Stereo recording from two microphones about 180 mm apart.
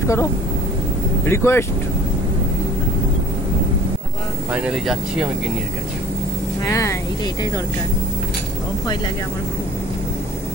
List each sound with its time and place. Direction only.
0.0 s speech: 15° left (ahead or behind)
1.3 s speech: 15° left (ahead or behind)
4.5 s speech: 5° right (ahead or behind)
6.6 s speech: 20° left (ahead or behind)